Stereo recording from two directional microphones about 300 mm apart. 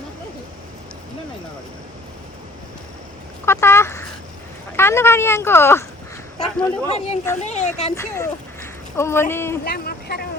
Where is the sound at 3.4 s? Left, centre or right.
Centre.